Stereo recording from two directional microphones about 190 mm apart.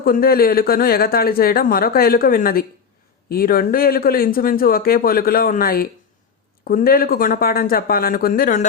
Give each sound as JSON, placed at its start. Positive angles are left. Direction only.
{"t": 0.0, "sound": "a man's voice", "side_deg": 50}